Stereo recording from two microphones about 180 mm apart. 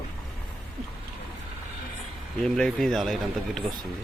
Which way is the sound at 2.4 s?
Centre (ahead or behind).